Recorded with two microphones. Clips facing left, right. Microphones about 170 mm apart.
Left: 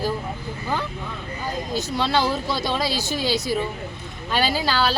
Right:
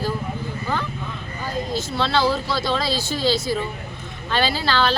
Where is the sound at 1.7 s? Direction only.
15° left (ahead or behind).